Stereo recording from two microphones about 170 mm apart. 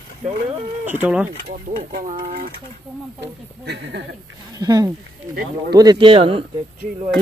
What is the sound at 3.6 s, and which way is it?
Speech, 80° right.